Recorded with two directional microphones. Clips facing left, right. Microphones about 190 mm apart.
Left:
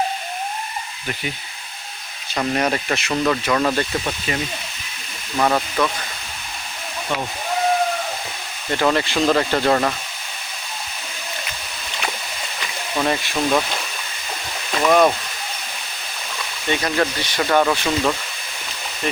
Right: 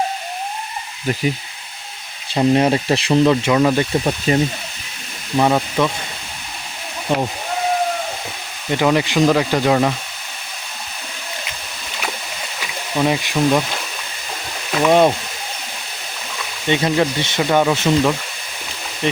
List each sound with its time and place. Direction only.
2.3 s speech: 25° right (ahead or behind)
3.6 s speech: 10° right (ahead or behind)
4.3 s speech: 35° right (ahead or behind)
5.4 s speech: 15° right (ahead or behind)
7.1 s speech: 30° right (ahead or behind)
8.7 s speech: 15° right (ahead or behind)
12.5 s speech: 10° right (ahead or behind)
14.8 s speech: 20° right (ahead or behind)
16.6 s speech: 20° right (ahead or behind)
17.4 s speech: 10° right (ahead or behind)